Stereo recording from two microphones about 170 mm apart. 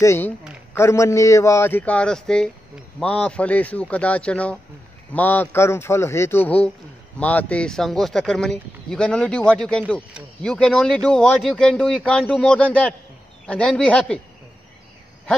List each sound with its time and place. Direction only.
0.0 s a man's voice: 15° left (ahead or behind)